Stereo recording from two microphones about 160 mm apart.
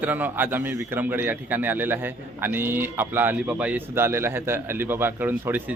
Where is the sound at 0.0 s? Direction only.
10° right (ahead or behind).